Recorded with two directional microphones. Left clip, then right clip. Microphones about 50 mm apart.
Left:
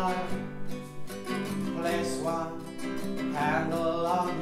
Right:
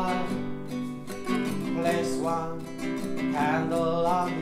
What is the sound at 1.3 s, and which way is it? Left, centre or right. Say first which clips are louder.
Music: right 4 dB; right.